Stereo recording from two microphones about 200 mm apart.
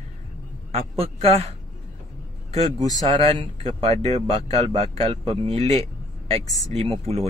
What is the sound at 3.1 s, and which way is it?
Speech, 30° right (ahead or behind).